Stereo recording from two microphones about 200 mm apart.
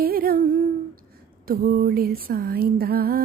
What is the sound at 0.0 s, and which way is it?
Humming, 50° right (ahead or behind).